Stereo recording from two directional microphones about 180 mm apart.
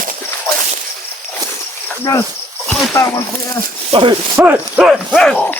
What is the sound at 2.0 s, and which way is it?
Speech, 15° left (ahead or behind).